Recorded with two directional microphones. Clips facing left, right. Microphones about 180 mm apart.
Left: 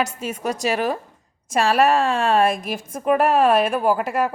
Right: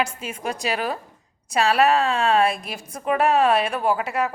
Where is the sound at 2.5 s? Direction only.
50° left (ahead or behind).